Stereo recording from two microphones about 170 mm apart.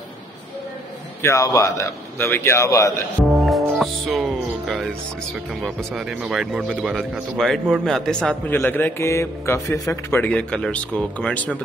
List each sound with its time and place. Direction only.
1.2 s a man's voice: 20° left (ahead or behind)
3.4 s music: centre (ahead or behind)
5.6 s a man's voice: centre (ahead or behind)